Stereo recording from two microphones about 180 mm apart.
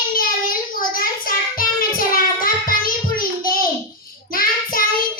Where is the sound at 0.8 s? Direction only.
50° left (ahead or behind).